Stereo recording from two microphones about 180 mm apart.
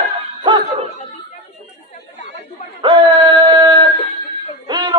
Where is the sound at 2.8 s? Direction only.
25° right (ahead or behind).